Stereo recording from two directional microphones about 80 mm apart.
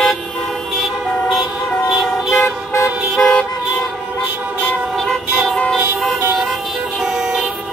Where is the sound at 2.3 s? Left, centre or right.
Left.